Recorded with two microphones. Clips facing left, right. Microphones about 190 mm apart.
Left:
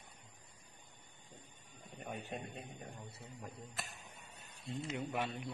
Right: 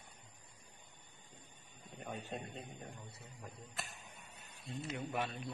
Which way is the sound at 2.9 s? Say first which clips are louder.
Left 2 dB; 30° left (ahead or behind).